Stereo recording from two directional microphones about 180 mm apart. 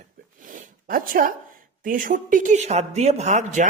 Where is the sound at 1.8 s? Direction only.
50° right (ahead or behind).